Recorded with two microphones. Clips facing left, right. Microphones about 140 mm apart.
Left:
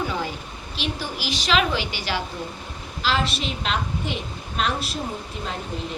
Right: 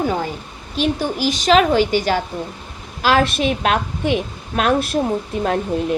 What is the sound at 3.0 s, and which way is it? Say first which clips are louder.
A woman's voice: right 9 dB; 55° right (ahead or behind).